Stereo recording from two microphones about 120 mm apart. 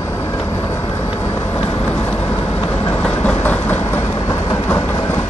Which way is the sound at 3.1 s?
15° left (ahead or behind).